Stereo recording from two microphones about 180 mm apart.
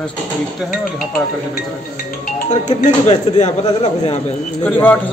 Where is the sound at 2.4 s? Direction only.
40° left (ahead or behind).